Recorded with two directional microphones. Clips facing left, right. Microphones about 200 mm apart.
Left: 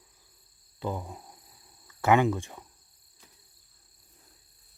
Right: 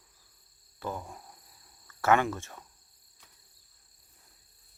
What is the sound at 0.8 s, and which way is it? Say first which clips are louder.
Speech: left 3 dB; 15° left (ahead or behind).